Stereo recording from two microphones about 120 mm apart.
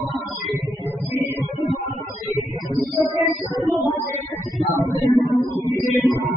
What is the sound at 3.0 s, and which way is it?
Music, 30° left (ahead or behind).